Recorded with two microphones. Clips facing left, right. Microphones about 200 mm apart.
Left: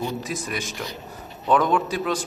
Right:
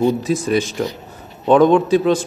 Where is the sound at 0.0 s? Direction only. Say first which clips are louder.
Right 11 dB; 25° right (ahead or behind).